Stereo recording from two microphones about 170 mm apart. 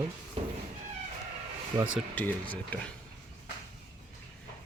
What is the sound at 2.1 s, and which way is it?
Speech, 10° left (ahead or behind).